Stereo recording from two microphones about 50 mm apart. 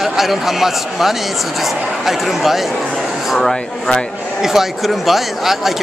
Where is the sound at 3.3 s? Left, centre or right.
Centre.